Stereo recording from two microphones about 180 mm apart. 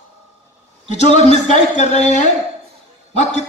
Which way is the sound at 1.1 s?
40° left (ahead or behind).